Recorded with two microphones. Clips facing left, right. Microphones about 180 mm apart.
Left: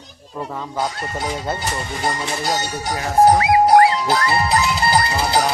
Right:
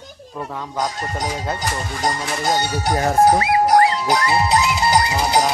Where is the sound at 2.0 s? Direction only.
50° right (ahead or behind).